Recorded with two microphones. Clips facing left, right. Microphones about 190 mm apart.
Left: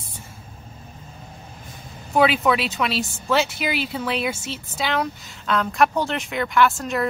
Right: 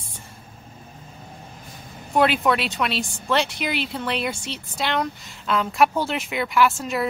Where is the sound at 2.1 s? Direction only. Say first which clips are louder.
Left 1 dB; centre (ahead or behind).